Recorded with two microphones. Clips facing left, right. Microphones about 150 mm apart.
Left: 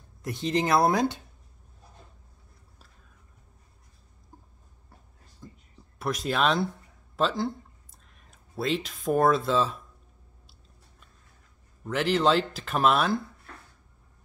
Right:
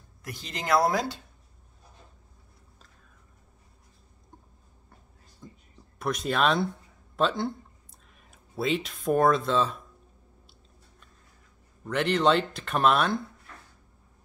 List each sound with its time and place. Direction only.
0.2 s speech: 25° left (ahead or behind)
5.4 s a sound: centre (ahead or behind)
5.9 s speech: centre (ahead or behind)
11.8 s speech: 5° left (ahead or behind)